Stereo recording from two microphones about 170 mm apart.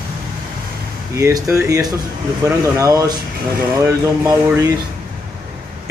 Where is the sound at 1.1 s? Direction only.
15° right (ahead or behind).